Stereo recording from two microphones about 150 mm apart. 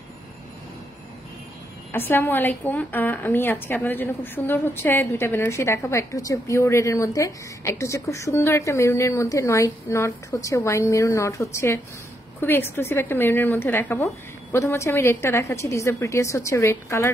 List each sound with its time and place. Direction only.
1.9 s a woman's voice: 15° left (ahead or behind)